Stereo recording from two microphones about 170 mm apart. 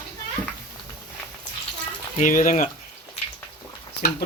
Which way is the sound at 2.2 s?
50° left (ahead or behind).